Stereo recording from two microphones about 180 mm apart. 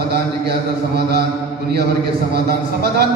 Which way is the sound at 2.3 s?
60° right (ahead or behind).